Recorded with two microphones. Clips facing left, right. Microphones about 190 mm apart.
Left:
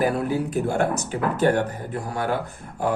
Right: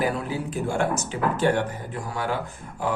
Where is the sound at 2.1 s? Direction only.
55° left (ahead or behind).